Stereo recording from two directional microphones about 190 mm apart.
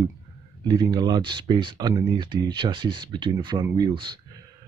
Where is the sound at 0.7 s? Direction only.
20° right (ahead or behind).